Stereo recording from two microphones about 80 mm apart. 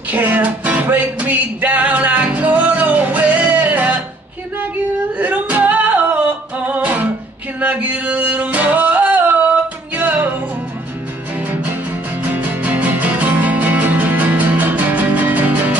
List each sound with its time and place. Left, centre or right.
0.1 s music: right
5.2 s music: centre
12.2 s music: centre